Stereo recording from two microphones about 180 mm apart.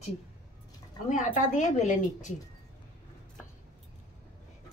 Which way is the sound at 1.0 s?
45° left (ahead or behind).